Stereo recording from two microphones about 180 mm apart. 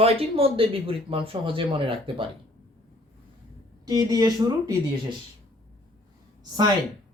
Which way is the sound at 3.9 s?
20° right (ahead or behind).